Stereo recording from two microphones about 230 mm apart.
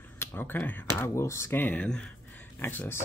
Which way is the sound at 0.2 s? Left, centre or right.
Centre.